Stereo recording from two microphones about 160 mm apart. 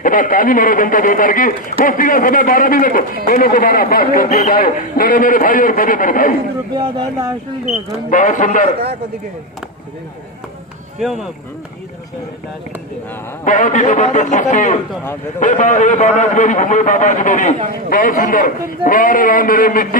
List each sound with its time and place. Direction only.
0.0 s speech: 60° left (ahead or behind)
6.7 s speech: 25° right (ahead or behind)
8.1 s speech: 55° left (ahead or behind)
13.4 s a man's voice: 55° left (ahead or behind)